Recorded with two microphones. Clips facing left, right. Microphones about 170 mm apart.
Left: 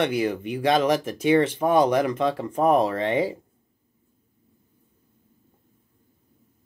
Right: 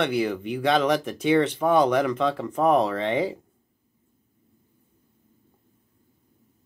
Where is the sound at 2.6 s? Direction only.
10° left (ahead or behind).